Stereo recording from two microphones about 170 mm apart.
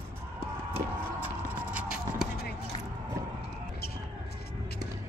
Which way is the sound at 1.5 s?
10° right (ahead or behind).